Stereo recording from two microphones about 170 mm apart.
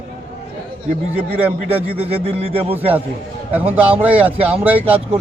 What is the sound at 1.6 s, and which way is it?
Speech, 35° right (ahead or behind).